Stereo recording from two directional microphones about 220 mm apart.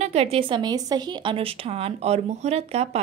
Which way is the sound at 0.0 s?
30° right (ahead or behind).